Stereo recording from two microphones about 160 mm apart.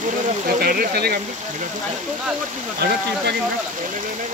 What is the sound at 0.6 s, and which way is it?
Speech, 70° right (ahead or behind).